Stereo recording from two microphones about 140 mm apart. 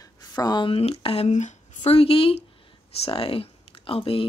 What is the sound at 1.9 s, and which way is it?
Speech, 40° left (ahead or behind).